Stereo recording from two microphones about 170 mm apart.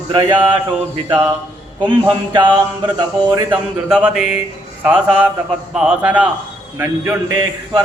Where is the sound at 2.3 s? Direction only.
25° right (ahead or behind).